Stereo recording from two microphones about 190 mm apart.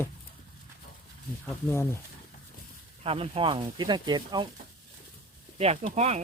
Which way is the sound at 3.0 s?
30° right (ahead or behind).